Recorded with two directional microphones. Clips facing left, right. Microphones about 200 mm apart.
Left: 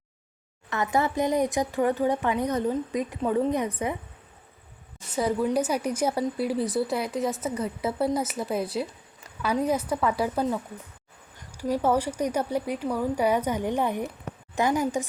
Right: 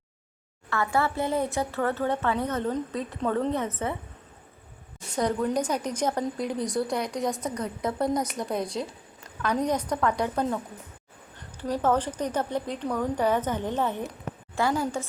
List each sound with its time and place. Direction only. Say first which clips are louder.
0.7 s speech: left 1 dB; 20° left (ahead or behind)
5.1 s speech: left 1 dB; 5° left (ahead or behind)